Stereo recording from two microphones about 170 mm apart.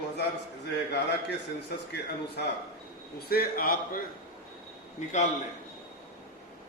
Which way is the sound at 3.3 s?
60° left (ahead or behind).